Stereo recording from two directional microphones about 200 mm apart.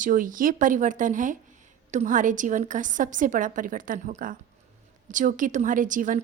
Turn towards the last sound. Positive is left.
turn(degrees=-40)  # may be behind; listen again after turning